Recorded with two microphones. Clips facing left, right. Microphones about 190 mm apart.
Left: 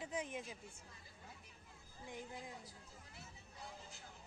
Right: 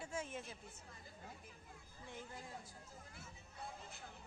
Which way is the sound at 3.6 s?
60° right (ahead or behind).